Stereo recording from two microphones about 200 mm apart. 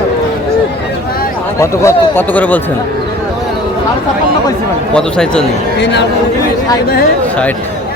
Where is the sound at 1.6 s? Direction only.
10° left (ahead or behind).